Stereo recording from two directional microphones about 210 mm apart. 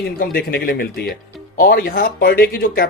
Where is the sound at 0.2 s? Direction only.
45° left (ahead or behind).